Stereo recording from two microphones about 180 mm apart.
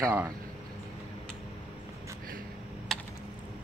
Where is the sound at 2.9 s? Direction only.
Centre (ahead or behind).